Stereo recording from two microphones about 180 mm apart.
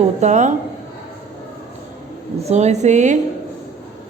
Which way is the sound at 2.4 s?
40° right (ahead or behind).